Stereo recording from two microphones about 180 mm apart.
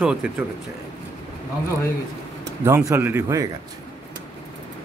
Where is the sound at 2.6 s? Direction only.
15° right (ahead or behind).